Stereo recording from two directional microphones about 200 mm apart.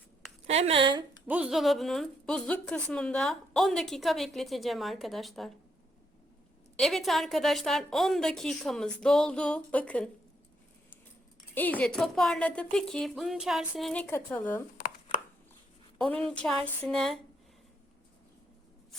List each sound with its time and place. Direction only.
0.4 s a woman's voice: 30° right (ahead or behind)
1.3 s a woman's voice: 5° right (ahead or behind)
6.7 s a woman's voice: centre (ahead or behind)
11.5 s a woman's voice: 10° left (ahead or behind)
16.0 s a woman's voice: 5° left (ahead or behind)